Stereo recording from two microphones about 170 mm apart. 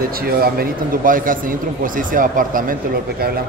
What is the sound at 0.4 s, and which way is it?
A man's voice, 60° right (ahead or behind).